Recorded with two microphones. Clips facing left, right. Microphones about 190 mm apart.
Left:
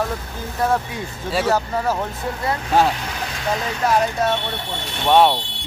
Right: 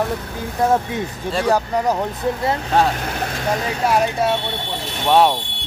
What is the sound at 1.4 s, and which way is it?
Speech, 15° right (ahead or behind).